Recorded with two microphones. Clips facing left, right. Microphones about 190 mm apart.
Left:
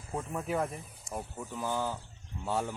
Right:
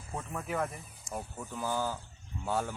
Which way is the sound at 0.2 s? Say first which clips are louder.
Left 2 dB; 20° left (ahead or behind).